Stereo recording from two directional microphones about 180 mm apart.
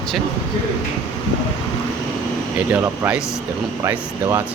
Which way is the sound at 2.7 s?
10° right (ahead or behind).